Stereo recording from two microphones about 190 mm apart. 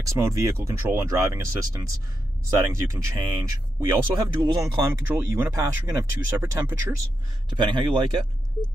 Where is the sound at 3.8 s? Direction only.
25° right (ahead or behind).